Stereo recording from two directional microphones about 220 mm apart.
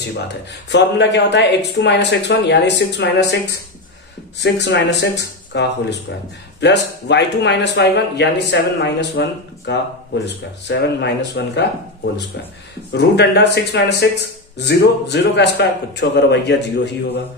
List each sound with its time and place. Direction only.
0.7 s speech: 50° left (ahead or behind)
4.4 s speech: 50° left (ahead or behind)